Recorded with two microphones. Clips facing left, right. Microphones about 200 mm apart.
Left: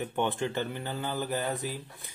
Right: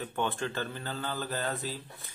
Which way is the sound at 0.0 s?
20° left (ahead or behind).